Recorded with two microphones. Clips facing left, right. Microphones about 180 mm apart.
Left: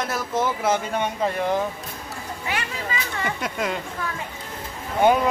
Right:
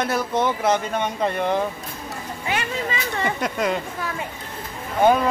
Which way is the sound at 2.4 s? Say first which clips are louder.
Right 4 dB; 25° right (ahead or behind).